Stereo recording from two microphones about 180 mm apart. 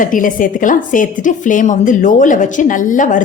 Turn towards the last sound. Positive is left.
turn(degrees=45)  # may be behind; listen again after turning